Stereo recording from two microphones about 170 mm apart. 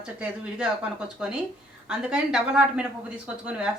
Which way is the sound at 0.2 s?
5° right (ahead or behind).